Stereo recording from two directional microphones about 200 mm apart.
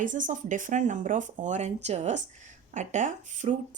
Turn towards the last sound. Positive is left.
turn(degrees=-40)  # may be behind; listen again after turning